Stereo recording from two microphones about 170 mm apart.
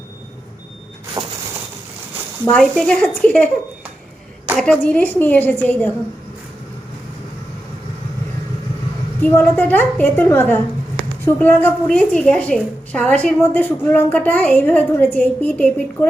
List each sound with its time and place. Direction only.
1.2 s a sound: 25° right (ahead or behind)
2.5 s a woman's voice: 5° left (ahead or behind)
4.5 s a woman's voice: 5° left (ahead or behind)
9.2 s a woman's voice: 10° left (ahead or behind)